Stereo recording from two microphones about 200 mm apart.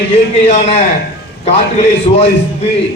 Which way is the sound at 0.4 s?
30° left (ahead or behind).